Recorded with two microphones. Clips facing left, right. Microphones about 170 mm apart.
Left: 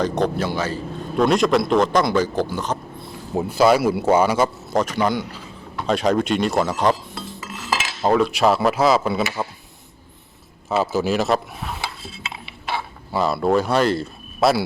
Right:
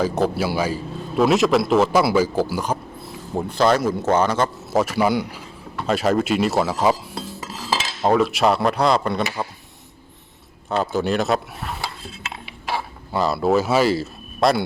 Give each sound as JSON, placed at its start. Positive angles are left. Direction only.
{"t": 0.0, "sound": "a man's voice", "side_deg": -5}
{"t": 3.3, "sound": "speech", "side_deg": 10}
{"t": 4.7, "sound": "a man's voice", "side_deg": -5}
{"t": 7.2, "sound": "cutlery", "side_deg": -30}
{"t": 8.0, "sound": "speech", "side_deg": 0}
{"t": 10.7, "sound": "speech", "side_deg": 5}